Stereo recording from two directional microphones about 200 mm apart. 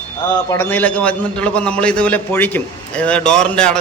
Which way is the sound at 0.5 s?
10° left (ahead or behind).